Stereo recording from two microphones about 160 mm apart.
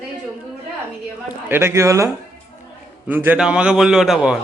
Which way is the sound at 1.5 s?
15° right (ahead or behind).